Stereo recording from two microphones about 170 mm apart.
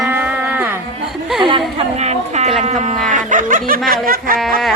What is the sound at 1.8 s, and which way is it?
Speech, 40° right (ahead or behind).